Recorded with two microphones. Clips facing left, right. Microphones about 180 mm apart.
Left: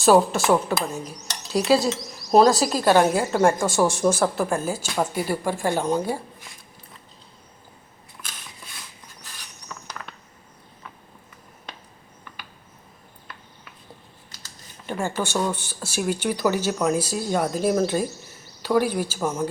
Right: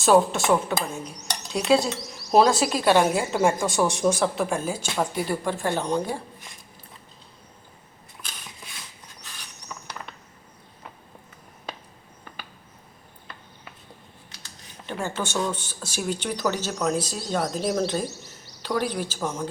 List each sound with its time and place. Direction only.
0.0 s a woman's voice: centre (ahead or behind)
2.4 s speech: 40° left (ahead or behind)
2.8 s a woman's voice: centre (ahead or behind)
14.8 s speech: 10° left (ahead or behind)